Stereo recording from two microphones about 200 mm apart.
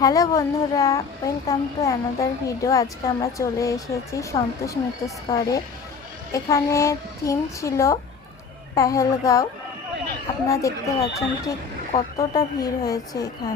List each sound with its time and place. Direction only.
0.0 s a child's voice: 20° left (ahead or behind)